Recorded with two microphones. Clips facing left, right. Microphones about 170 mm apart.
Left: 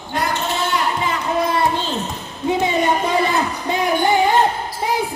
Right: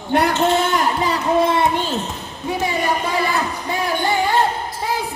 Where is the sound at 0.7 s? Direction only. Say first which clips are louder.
Right 2 dB; 35° right (ahead or behind).